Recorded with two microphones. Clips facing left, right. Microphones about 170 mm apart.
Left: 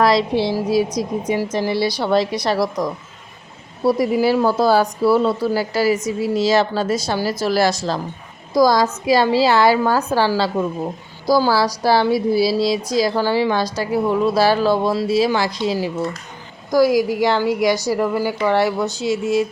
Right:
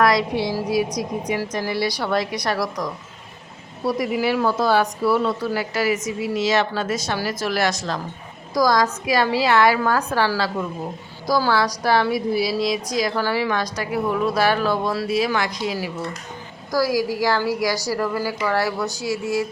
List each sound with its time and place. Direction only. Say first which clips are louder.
0.0 s a woman's voice: left 3 dB; 30° left (ahead or behind)